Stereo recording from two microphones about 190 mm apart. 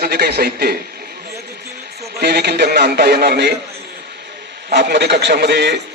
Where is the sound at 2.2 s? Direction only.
55° right (ahead or behind).